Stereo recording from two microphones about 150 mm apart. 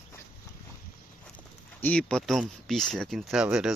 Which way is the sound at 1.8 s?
10° left (ahead or behind).